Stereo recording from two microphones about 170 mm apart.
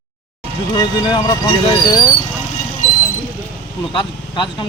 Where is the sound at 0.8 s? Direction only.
25° left (ahead or behind).